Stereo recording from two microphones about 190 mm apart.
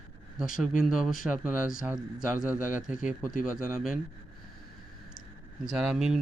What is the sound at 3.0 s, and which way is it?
Speech, 45° left (ahead or behind).